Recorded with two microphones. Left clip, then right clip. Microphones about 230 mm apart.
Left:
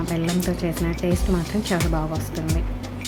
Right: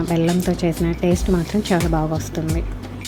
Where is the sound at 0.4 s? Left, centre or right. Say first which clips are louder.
Right 4 dB; centre.